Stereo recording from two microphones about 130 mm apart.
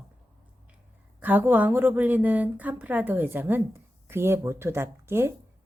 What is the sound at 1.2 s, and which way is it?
A woman's voice, 15° right (ahead or behind).